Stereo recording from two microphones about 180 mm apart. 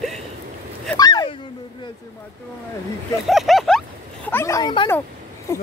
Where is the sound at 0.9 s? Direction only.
25° left (ahead or behind).